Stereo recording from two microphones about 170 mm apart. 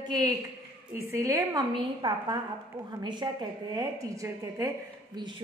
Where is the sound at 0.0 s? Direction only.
25° right (ahead or behind).